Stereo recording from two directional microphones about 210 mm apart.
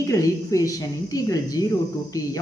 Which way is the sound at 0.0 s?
15° left (ahead or behind).